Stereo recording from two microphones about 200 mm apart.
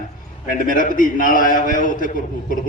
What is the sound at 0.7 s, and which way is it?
A man's voice, 40° left (ahead or behind).